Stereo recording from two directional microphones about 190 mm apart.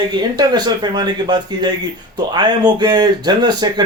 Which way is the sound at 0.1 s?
20° right (ahead or behind).